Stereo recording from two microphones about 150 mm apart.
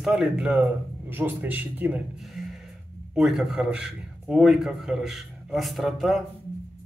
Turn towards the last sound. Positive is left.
turn(degrees=0)  # may be behind; listen again after turning